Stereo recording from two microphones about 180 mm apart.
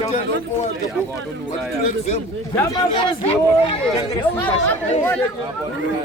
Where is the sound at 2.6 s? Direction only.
20° left (ahead or behind).